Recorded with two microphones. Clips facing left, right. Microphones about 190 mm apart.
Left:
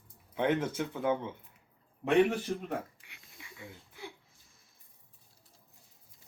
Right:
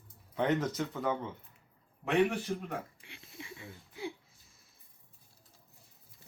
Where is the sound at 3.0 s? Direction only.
25° right (ahead or behind).